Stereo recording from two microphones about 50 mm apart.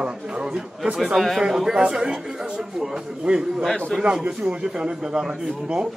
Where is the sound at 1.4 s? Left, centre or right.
Centre.